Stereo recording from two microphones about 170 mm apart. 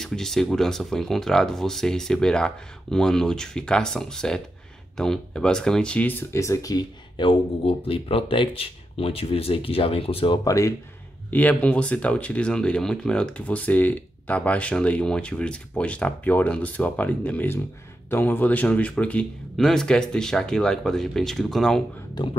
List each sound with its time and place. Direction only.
0.0 s speech: 5° left (ahead or behind); by 10.7 s 20° left (ahead or behind)
11.2 s speech: 10° left (ahead or behind)